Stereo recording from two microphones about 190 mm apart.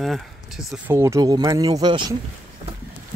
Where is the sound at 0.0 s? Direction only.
Centre (ahead or behind).